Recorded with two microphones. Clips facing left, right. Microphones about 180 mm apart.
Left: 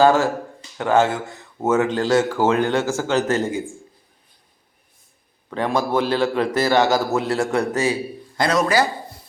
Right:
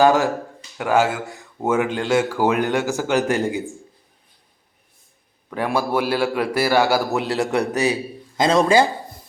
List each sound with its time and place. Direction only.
0.0 s a man's voice: 15° right (ahead or behind)
5.5 s a man's voice: 10° right (ahead or behind); by 8.9 s 25° right (ahead or behind)